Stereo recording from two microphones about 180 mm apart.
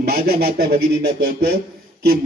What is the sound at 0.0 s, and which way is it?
Speech, 55° right (ahead or behind).